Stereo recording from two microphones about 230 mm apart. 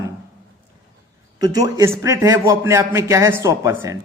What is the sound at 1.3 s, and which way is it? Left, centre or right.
A man's voice, centre.